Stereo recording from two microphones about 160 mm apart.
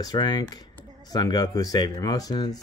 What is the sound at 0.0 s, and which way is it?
Speech, 25° left (ahead or behind).